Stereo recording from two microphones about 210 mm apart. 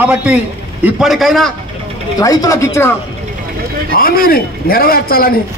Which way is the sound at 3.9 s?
45° left (ahead or behind).